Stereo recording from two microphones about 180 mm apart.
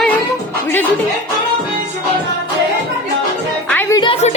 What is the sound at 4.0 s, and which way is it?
Music, 35° left (ahead or behind).